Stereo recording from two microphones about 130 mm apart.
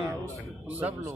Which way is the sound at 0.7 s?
10° right (ahead or behind).